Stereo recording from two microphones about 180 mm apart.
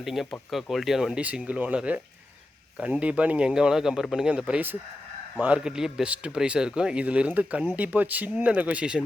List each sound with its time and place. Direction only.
0.0 s a man's voice: centre (ahead or behind)